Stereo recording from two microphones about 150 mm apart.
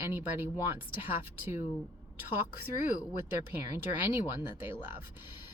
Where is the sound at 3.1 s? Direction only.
15° right (ahead or behind).